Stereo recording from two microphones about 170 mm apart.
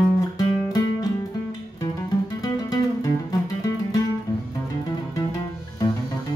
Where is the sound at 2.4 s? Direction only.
20° left (ahead or behind).